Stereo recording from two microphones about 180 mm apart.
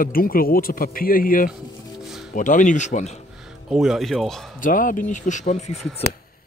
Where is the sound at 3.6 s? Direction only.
Centre (ahead or behind).